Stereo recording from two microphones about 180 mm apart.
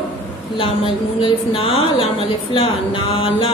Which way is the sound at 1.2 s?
30° left (ahead or behind).